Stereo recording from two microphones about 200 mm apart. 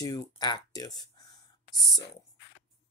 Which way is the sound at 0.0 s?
20° left (ahead or behind).